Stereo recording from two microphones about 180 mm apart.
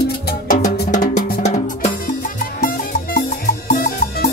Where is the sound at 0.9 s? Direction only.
45° left (ahead or behind).